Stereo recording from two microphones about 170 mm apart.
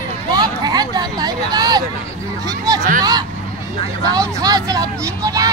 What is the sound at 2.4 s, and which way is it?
Speech, 20° right (ahead or behind).